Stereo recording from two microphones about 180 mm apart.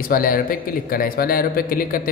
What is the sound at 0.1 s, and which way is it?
A man's voice, 50° left (ahead or behind).